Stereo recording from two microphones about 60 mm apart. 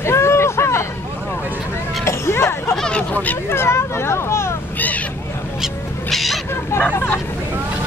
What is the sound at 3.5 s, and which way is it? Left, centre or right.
Speech, left.